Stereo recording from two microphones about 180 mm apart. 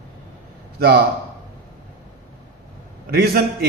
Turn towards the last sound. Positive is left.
turn(degrees=-60)  # may be behind; listen again after turning